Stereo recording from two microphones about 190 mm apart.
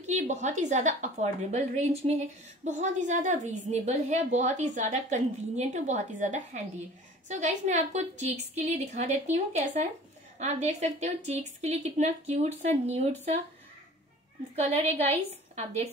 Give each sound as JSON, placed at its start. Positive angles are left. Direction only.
{"t": 0.0, "sound": "a woman's voice", "side_deg": -40}
{"t": 14.5, "sound": "a woman's voice", "side_deg": -35}